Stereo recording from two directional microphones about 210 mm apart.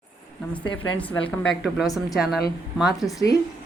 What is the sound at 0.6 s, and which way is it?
Speech, 20° left (ahead or behind).